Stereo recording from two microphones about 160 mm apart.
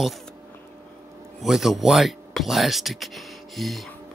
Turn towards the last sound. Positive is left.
turn(degrees=0)  # may be behind; listen again after turning